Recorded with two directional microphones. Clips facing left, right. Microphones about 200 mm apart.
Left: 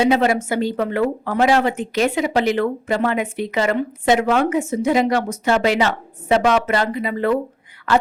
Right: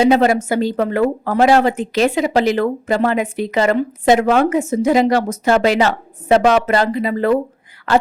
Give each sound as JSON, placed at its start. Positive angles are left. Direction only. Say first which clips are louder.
{"t": 0.0, "sound": "a woman's voice", "louder": "right 3 dB", "side_deg": -40}